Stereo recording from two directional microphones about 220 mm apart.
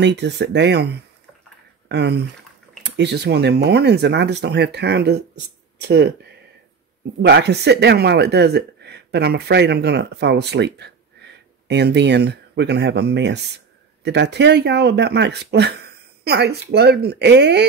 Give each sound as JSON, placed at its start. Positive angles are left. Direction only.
{"t": 0.0, "sound": "speech", "side_deg": -55}
{"t": 1.9, "sound": "speech", "side_deg": -50}
{"t": 7.2, "sound": "speech", "side_deg": -50}